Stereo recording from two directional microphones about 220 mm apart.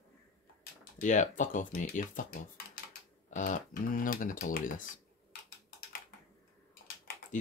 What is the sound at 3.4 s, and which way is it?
Speech, 35° left (ahead or behind).